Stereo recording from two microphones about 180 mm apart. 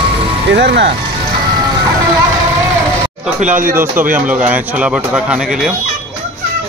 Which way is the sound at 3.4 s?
45° right (ahead or behind).